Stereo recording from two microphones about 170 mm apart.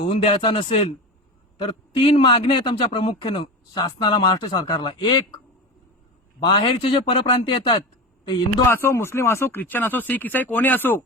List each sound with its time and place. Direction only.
0.1 s a man's voice: 30° left (ahead or behind)
6.4 s a man's voice: 30° left (ahead or behind)
8.7 s speech: 15° left (ahead or behind)